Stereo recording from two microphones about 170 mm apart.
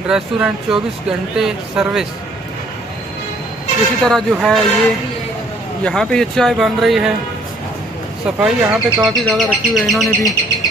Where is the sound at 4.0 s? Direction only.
5° left (ahead or behind).